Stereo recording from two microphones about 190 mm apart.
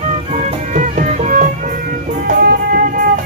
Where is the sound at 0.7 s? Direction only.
45° right (ahead or behind).